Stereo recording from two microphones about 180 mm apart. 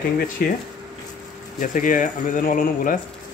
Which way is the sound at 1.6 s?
45° left (ahead or behind).